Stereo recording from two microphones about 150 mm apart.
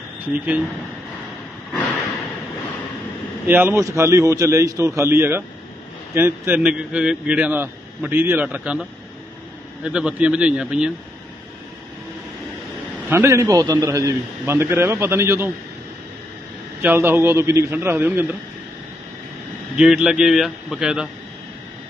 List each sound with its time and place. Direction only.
0.3 s a man's voice: 10° right (ahead or behind)
3.4 s a man's voice: 15° right (ahead or behind)
9.8 s a man's voice: 5° right (ahead or behind)
13.1 s a man's voice: 15° right (ahead or behind)
16.8 s a man's voice: 15° right (ahead or behind)
19.8 s a man's voice: 5° right (ahead or behind)